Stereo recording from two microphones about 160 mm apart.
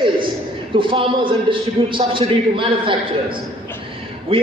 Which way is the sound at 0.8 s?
30° right (ahead or behind).